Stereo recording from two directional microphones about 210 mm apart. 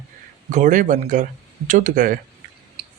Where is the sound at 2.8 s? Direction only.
25° right (ahead or behind).